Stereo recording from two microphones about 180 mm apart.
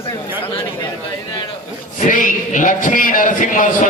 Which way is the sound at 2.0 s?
45° left (ahead or behind).